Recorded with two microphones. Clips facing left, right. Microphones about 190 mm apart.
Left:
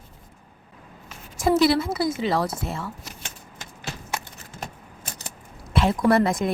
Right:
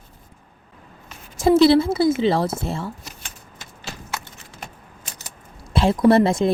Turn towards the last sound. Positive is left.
turn(degrees=-25)  # may be behind; listen again after turning